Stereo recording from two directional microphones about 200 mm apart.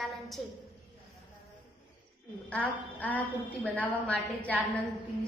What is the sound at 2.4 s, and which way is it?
A woman's voice, 5° left (ahead or behind).